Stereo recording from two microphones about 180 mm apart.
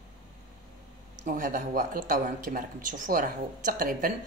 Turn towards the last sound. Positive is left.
turn(degrees=-50)  # may be behind; listen again after turning